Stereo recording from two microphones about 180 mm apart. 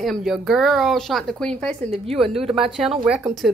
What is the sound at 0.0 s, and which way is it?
Speech, centre (ahead or behind).